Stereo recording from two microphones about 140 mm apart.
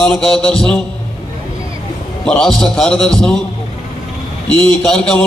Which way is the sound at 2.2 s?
5° left (ahead or behind).